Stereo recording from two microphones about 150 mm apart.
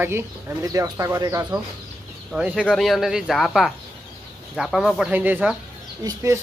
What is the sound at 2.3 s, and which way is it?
Speech, 5° right (ahead or behind).